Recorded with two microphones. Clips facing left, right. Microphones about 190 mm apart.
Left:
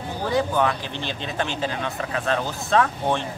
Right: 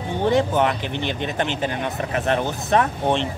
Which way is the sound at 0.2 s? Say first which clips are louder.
Right 3 dB; 25° right (ahead or behind).